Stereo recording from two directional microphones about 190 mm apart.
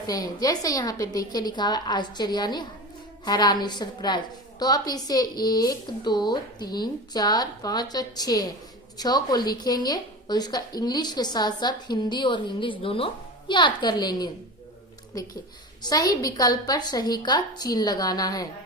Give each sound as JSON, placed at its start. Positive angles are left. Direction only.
{"t": 0.1, "sound": "a woman's voice", "side_deg": 20}